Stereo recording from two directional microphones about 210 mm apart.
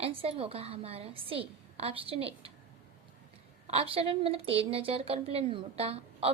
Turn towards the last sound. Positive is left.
turn(degrees=-30)  # may be behind; listen again after turning